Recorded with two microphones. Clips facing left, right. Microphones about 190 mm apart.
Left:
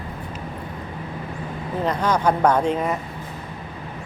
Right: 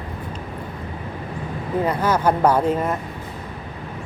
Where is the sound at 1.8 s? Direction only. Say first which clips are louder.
Even; 10° right (ahead or behind).